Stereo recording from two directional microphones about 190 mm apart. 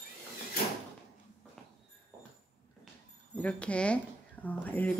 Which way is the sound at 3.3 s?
5° left (ahead or behind).